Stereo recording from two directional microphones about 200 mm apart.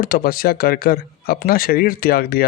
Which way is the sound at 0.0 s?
45° left (ahead or behind).